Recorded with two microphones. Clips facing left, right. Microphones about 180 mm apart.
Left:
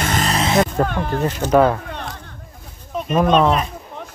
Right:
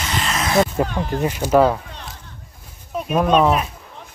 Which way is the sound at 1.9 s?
60° left (ahead or behind).